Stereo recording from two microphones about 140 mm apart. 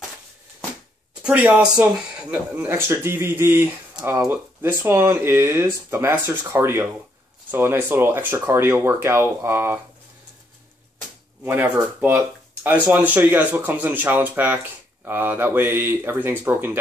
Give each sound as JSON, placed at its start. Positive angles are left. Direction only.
{"t": 1.2, "sound": "speech", "side_deg": -10}
{"t": 11.4, "sound": "speech", "side_deg": -15}